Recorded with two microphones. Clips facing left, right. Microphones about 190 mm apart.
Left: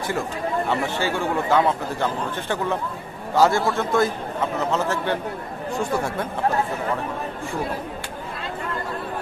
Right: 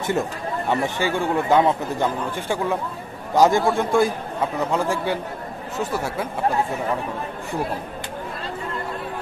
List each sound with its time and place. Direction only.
0.7 s speech: 15° right (ahead or behind)